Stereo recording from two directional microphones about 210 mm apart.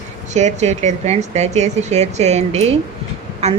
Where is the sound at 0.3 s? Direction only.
35° right (ahead or behind).